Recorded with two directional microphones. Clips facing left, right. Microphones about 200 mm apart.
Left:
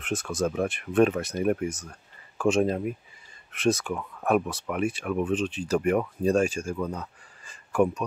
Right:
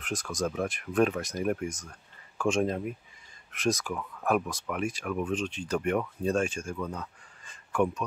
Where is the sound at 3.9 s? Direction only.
15° left (ahead or behind).